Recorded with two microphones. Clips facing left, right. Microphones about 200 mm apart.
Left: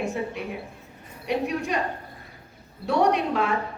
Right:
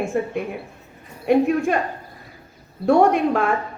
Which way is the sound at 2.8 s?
50° right (ahead or behind).